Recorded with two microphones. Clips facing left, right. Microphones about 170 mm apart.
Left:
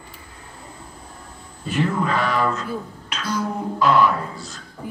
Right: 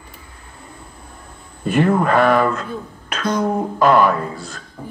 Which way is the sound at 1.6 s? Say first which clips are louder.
Right 6 dB; 55° right (ahead or behind).